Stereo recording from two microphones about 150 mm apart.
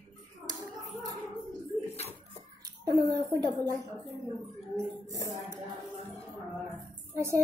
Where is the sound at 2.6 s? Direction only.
25° right (ahead or behind).